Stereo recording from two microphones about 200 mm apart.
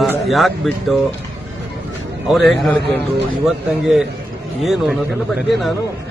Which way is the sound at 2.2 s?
Centre (ahead or behind).